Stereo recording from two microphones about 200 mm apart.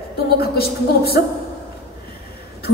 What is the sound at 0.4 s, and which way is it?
Speech, 50° left (ahead or behind).